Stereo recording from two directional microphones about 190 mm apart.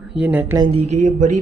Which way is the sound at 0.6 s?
30° right (ahead or behind).